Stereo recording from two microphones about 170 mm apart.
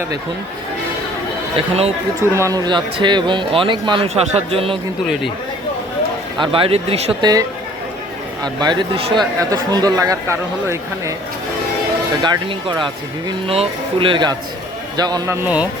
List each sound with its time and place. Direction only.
1.5 s speech: 35° right (ahead or behind)
2.3 s speech: 20° right (ahead or behind)
6.4 s speech: 30° right (ahead or behind)
7.2 s speech: 25° right (ahead or behind)
8.6 s speech: 30° right (ahead or behind)
12.2 s a man's voice: 30° right (ahead or behind); by 15.6 s 10° right (ahead or behind)